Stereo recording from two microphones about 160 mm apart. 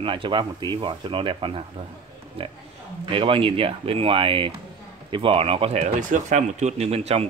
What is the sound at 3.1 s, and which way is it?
Speech, 35° right (ahead or behind).